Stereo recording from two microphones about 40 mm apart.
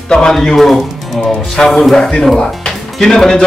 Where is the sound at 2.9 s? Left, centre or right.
Centre.